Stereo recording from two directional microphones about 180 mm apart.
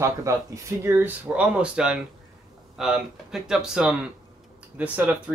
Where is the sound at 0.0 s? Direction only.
15° right (ahead or behind).